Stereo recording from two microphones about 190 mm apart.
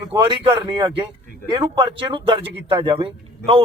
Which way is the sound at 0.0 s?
20° right (ahead or behind).